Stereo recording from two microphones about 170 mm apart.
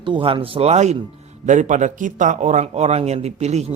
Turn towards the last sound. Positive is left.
turn(degrees=-40)  # may be behind; listen again after turning